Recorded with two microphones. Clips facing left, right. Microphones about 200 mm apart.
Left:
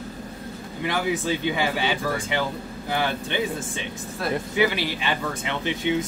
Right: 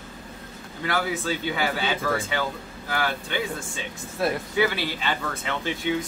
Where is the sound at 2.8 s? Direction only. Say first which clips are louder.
Left 2 dB; 20° left (ahead or behind).